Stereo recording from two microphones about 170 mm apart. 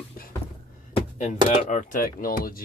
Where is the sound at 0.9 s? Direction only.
40° left (ahead or behind).